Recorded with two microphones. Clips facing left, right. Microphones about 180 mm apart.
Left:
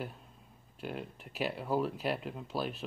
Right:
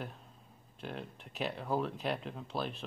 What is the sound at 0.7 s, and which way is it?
Speech, 5° left (ahead or behind).